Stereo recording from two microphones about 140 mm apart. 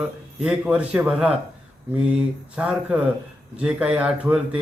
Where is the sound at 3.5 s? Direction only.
5° right (ahead or behind).